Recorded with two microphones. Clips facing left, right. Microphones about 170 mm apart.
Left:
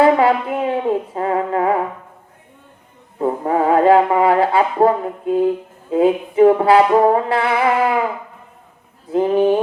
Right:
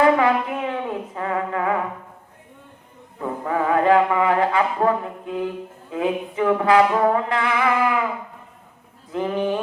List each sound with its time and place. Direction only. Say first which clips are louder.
0.0 s music: left 4 dB; 30° left (ahead or behind)
3.2 s mantra: left 6 dB; 30° left (ahead or behind)
5.9 s music: left 8 dB; 30° left (ahead or behind)
9.1 s music: left 8 dB; 30° left (ahead or behind)